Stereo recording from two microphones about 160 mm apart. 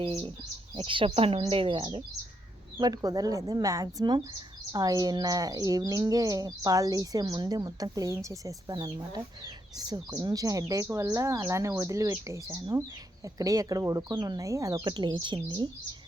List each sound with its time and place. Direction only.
0.0 s speech: 35° right (ahead or behind)